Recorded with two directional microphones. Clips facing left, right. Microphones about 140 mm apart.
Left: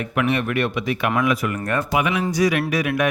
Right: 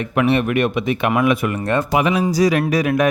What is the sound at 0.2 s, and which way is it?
Speech, 30° right (ahead or behind).